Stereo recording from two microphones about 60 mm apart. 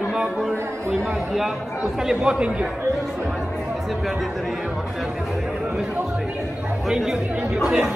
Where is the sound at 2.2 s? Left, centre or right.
Centre.